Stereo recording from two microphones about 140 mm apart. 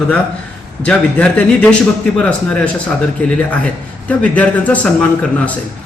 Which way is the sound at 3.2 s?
10° left (ahead or behind).